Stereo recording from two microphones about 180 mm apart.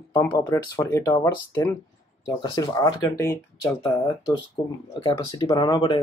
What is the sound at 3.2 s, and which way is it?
Speech, 15° left (ahead or behind).